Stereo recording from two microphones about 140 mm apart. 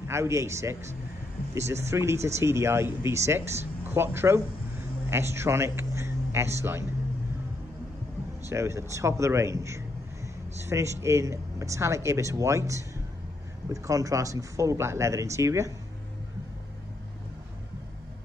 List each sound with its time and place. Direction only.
0.1 s speech: 20° right (ahead or behind)
8.5 s speech: 20° right (ahead or behind)